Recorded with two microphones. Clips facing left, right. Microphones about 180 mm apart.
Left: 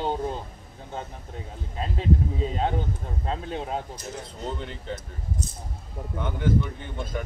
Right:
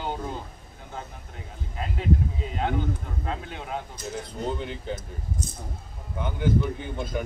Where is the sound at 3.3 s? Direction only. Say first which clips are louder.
Left 4 dB; 35° left (ahead or behind).